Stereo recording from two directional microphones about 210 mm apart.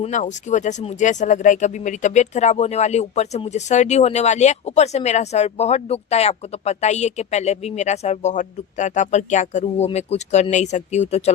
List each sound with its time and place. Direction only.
0.0 s speech: 35° left (ahead or behind)